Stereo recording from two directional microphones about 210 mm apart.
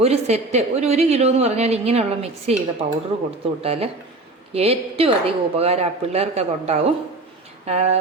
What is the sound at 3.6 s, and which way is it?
A woman's voice, 30° right (ahead or behind).